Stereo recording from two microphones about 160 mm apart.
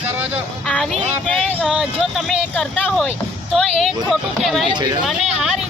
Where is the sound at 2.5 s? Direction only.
5° left (ahead or behind).